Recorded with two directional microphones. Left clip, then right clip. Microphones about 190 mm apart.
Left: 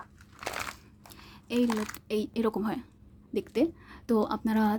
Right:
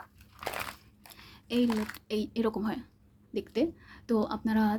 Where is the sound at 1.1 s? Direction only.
25° left (ahead or behind).